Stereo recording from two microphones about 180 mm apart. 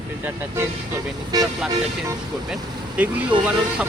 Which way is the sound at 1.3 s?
20° right (ahead or behind).